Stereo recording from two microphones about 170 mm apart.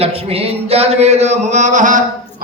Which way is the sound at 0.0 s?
35° right (ahead or behind).